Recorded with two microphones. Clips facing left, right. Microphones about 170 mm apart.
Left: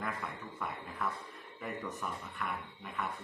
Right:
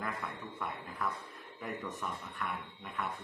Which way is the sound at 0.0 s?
Centre (ahead or behind).